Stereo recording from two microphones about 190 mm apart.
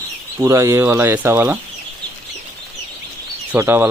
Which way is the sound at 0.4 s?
15° right (ahead or behind).